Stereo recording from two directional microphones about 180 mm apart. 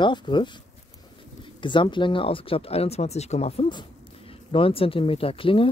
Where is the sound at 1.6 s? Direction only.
25° left (ahead or behind).